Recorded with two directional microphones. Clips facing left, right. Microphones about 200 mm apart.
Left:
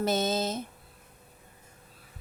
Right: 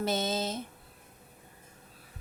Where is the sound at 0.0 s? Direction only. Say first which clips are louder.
Left 3 dB; 45° left (ahead or behind).